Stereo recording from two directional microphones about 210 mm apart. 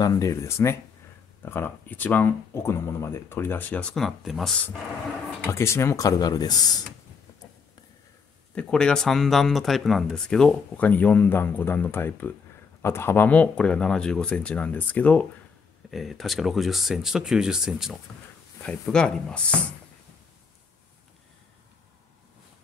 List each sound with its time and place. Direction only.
0.0 s speech: 15° left (ahead or behind); by 4.6 s centre (ahead or behind)
5.4 s speech: 10° left (ahead or behind)
8.5 s speech: 5° left (ahead or behind)